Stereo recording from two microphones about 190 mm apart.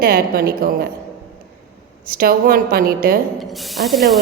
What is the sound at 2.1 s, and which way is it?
A woman's voice, 50° right (ahead or behind).